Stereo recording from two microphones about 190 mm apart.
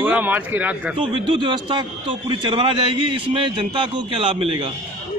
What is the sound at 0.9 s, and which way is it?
A man's voice, 25° right (ahead or behind).